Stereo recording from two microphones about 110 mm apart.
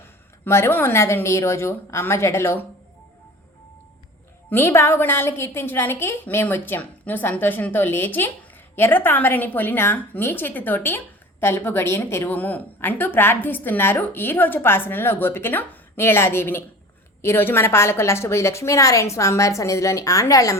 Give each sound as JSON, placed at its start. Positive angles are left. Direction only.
{"t": 0.4, "sound": "a woman's voice", "side_deg": 20}
{"t": 4.4, "sound": "a woman's voice", "side_deg": 20}